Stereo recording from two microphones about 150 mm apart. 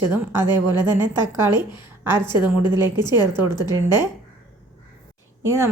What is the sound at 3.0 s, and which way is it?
Speech, 15° right (ahead or behind).